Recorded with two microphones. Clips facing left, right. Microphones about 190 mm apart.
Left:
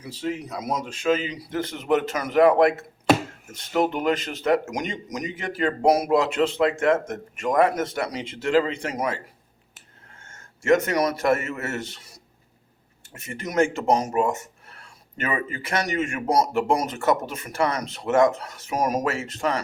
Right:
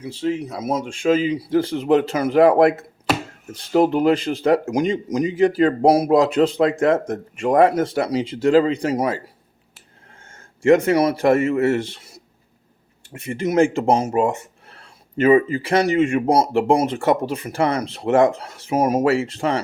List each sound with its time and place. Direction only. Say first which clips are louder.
0.0 s speech: right 6 dB; 30° right (ahead or behind)
10.3 s a man's voice: right 5 dB; 30° right (ahead or behind)